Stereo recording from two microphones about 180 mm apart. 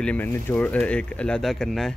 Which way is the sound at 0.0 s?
10° left (ahead or behind).